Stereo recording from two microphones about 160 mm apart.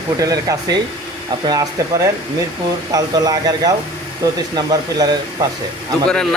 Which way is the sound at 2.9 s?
25° right (ahead or behind).